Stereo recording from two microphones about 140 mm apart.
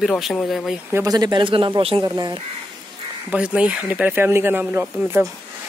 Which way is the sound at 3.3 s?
10° right (ahead or behind).